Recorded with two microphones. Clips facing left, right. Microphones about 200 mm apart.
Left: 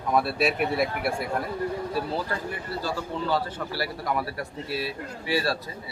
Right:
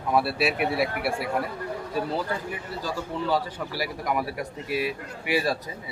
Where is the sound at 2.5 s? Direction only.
15° right (ahead or behind).